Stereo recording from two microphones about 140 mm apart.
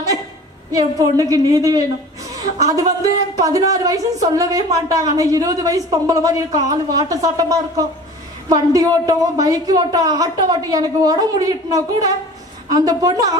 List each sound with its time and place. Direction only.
0.7 s a woman's voice: 25° right (ahead or behind)